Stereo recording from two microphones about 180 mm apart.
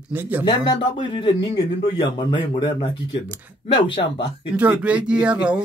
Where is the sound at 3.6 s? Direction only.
25° left (ahead or behind).